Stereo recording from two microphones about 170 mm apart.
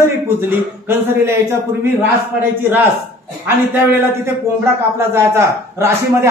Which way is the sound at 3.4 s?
10° right (ahead or behind).